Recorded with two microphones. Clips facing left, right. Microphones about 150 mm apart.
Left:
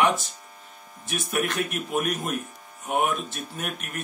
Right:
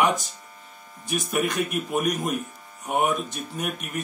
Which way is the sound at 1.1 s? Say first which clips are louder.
Right 2 dB; centre (ahead or behind).